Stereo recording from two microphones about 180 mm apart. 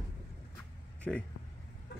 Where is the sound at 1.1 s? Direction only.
5° left (ahead or behind).